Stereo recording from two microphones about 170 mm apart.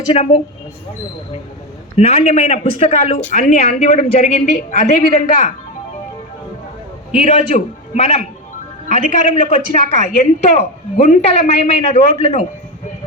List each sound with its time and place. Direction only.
0.1 s a woman's voice: 35° left (ahead or behind)
2.0 s a woman's voice: 40° left (ahead or behind)
7.1 s a man's voice: 45° left (ahead or behind)